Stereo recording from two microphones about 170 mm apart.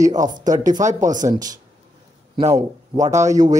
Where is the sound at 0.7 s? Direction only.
20° right (ahead or behind).